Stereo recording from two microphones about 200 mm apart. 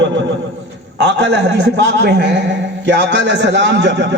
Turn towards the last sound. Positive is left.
turn(degrees=-60)  # may be behind; listen again after turning